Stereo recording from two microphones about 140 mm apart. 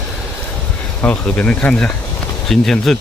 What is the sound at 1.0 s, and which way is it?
Speech, 10° left (ahead or behind).